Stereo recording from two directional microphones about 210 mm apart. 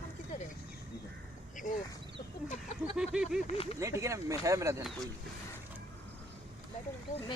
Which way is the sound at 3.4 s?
30° left (ahead or behind).